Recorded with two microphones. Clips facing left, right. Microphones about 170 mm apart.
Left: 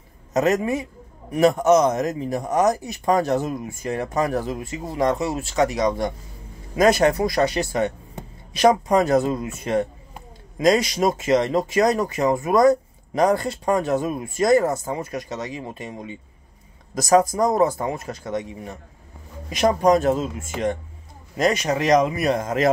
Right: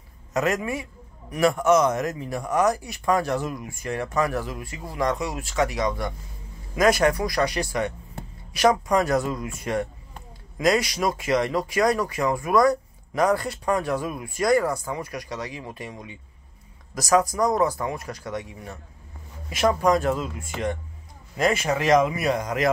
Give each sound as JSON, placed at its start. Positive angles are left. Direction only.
{"t": 0.3, "sound": "speech", "side_deg": 20}
{"t": 22.1, "sound": "a man's voice", "side_deg": 45}
{"t": 22.4, "sound": "speech", "side_deg": 25}